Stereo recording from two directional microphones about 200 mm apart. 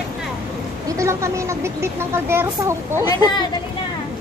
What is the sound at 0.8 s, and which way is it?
Speech, 15° right (ahead or behind).